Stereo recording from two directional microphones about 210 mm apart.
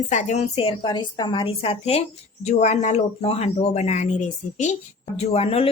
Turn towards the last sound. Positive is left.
turn(degrees=30)  # may be behind; listen again after turning